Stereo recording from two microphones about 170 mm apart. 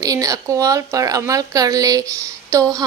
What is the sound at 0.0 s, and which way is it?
A woman's voice, 20° right (ahead or behind).